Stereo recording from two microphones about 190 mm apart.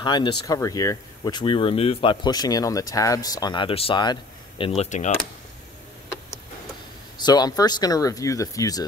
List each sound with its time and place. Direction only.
0.0 s speech: 25° left (ahead or behind)
7.2 s speech: 20° left (ahead or behind)